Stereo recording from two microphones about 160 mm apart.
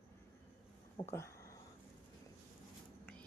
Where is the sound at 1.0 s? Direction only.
30° left (ahead or behind).